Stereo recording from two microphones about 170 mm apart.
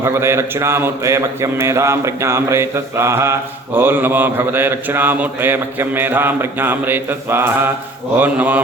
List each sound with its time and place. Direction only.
0.0 s mantra: 15° right (ahead or behind)